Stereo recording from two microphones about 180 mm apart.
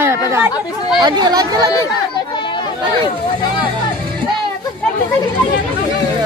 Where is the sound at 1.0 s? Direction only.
20° right (ahead or behind).